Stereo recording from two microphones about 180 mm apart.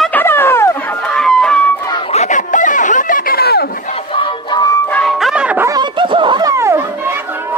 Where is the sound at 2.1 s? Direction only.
40° left (ahead or behind); by 3.7 s 60° left (ahead or behind).